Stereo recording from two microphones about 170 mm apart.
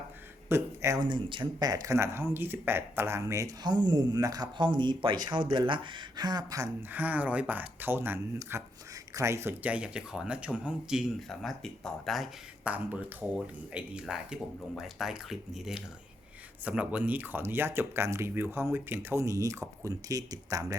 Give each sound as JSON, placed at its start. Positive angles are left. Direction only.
{"t": 0.4, "sound": "speech", "side_deg": -15}
{"t": 6.9, "sound": "speech", "side_deg": -10}